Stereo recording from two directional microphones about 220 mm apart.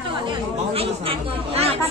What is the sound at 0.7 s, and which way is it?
Speech, 25° right (ahead or behind).